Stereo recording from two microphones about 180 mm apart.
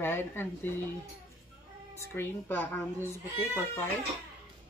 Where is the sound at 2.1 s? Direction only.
10° left (ahead or behind).